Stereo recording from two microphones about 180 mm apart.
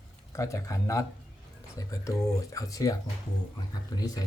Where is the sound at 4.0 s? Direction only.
20° left (ahead or behind).